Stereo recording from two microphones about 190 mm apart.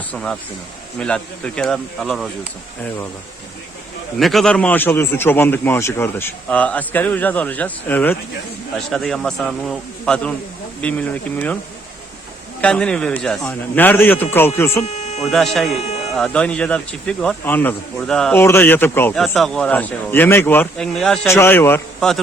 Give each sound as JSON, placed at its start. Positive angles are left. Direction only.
{"t": 0.1, "sound": "speech", "side_deg": 5}
{"t": 4.2, "sound": "speech", "side_deg": 0}
{"t": 12.6, "sound": "speech", "side_deg": 5}
{"t": 14.8, "sound": "a sound", "side_deg": 35}
{"t": 15.2, "sound": "speech", "side_deg": 0}